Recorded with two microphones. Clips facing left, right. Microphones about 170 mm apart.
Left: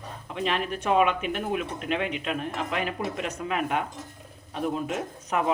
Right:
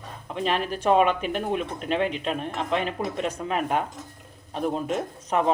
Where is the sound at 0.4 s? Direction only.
35° right (ahead or behind).